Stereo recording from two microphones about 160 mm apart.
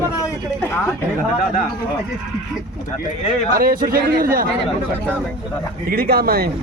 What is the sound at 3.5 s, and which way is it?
Speech, 65° right (ahead or behind).